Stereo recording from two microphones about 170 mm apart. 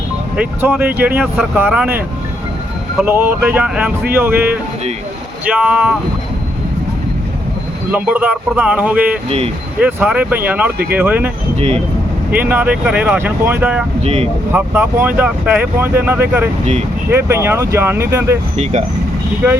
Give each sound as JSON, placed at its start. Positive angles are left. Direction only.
{"t": 0.3, "sound": "speech", "side_deg": -10}
{"t": 3.0, "sound": "speech", "side_deg": -10}
{"t": 7.9, "sound": "speech", "side_deg": -10}
{"t": 11.5, "sound": "speech", "side_deg": -35}
{"t": 12.3, "sound": "speech", "side_deg": -10}
{"t": 14.0, "sound": "speech", "side_deg": -35}
{"t": 14.5, "sound": "speech", "side_deg": -10}
{"t": 18.5, "sound": "speech", "side_deg": -40}